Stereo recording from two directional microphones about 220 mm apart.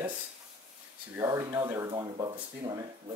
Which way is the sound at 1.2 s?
10° right (ahead or behind).